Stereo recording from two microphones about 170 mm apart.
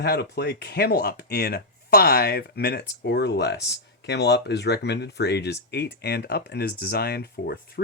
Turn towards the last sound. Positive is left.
turn(degrees=70)  # may be behind; listen again after turning